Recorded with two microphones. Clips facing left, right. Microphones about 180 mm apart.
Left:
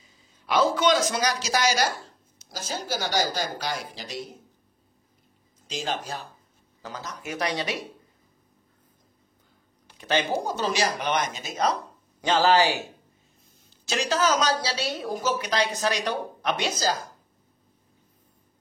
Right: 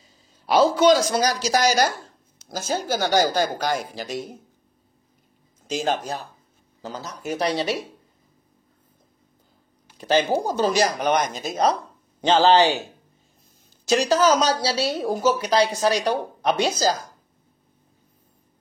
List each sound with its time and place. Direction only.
0.5 s a woman's voice: 30° right (ahead or behind)
2.5 s speech: 50° right (ahead or behind)
5.7 s speech: 45° right (ahead or behind)
6.8 s speech: 30° right (ahead or behind)
9.9 s a woman's voice: 35° right (ahead or behind)
12.2 s speech: 25° right (ahead or behind)
13.8 s a woman's voice: 40° right (ahead or behind)